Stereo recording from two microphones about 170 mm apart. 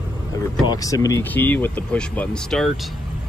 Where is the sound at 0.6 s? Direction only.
20° left (ahead or behind); by 2.9 s centre (ahead or behind).